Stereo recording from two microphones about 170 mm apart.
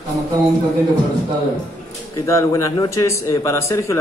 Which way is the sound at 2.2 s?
20° left (ahead or behind).